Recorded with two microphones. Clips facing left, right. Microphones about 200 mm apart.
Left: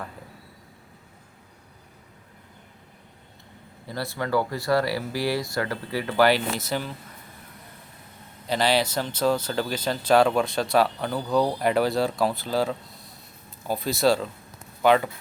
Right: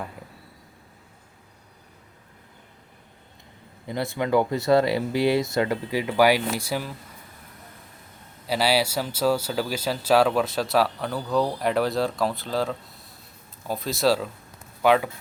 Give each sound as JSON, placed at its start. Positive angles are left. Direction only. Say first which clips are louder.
{"t": 3.8, "sound": "speech", "louder": "right 3 dB", "side_deg": -20}
{"t": 8.4, "sound": "speech", "louder": "even", "side_deg": -5}